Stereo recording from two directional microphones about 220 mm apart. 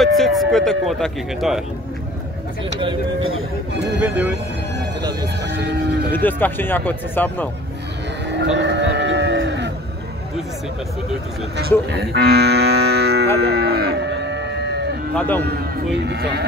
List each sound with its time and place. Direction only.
0.0 s speech: centre (ahead or behind)
5.6 s moo: 50° right (ahead or behind)
6.1 s speech: 10° left (ahead or behind)
8.3 s livestock: 50° right (ahead or behind)
11.9 s moo: 50° right (ahead or behind)
13.4 s livestock: 45° right (ahead or behind)
15.1 s speech: 10° left (ahead or behind)
15.4 s moo: 50° right (ahead or behind)